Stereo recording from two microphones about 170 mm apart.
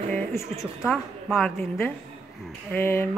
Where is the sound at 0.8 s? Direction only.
Centre (ahead or behind).